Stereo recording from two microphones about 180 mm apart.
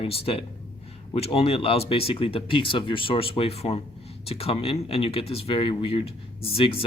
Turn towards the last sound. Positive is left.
turn(degrees=30)  # may be behind; listen again after turning